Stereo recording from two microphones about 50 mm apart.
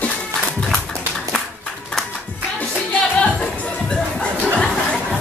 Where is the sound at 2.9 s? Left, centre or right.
Centre.